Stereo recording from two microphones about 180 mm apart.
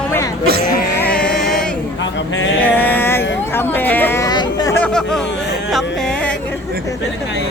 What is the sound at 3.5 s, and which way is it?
Chatter, 10° left (ahead or behind).